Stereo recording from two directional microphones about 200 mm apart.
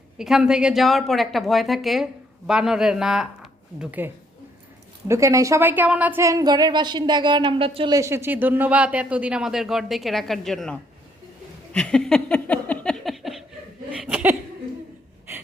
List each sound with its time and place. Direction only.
0.2 s a woman's voice: 5° right (ahead or behind); by 7.9 s 30° right (ahead or behind)
7.9 s speech: 15° right (ahead or behind)
11.7 s a sound: 5° left (ahead or behind)
13.9 s chuckle: 5° right (ahead or behind)